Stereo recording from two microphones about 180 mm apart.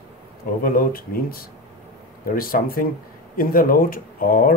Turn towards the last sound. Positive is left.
turn(degrees=50)  # may be behind; listen again after turning